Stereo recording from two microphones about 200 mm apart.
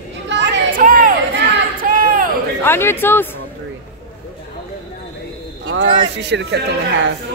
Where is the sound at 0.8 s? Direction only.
45° right (ahead or behind).